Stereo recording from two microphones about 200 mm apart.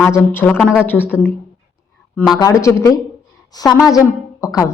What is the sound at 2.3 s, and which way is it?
A woman's voice, 15° left (ahead or behind).